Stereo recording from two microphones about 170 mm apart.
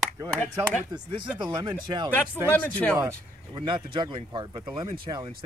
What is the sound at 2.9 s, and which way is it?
Speech, 25° right (ahead or behind).